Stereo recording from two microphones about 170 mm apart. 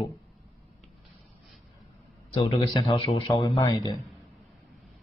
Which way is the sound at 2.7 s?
25° left (ahead or behind).